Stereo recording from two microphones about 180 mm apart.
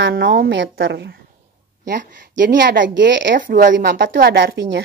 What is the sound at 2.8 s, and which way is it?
Speech, 85° right.